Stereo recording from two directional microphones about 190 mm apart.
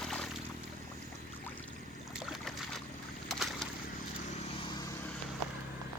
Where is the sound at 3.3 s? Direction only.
Centre (ahead or behind).